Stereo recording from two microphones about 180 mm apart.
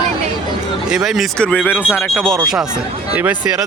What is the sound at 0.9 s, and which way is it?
Speech, 5° right (ahead or behind).